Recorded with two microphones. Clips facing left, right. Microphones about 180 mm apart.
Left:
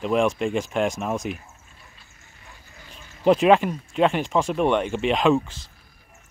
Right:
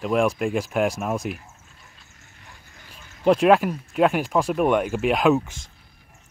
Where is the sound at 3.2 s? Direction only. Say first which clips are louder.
Even; centre (ahead or behind).